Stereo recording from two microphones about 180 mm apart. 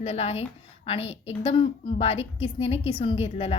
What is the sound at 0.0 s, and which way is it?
A woman's voice, 35° left (ahead or behind).